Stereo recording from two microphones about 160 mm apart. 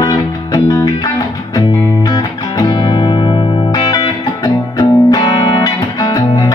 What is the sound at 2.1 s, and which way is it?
Music, 25° left (ahead or behind).